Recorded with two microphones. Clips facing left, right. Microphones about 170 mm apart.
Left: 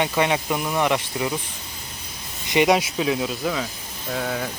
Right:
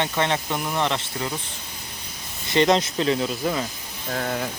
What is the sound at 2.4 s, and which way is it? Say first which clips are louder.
Speech: left 1 dB; 15° left (ahead or behind).